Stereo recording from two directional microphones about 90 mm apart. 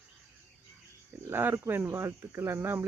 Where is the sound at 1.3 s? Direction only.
25° right (ahead or behind).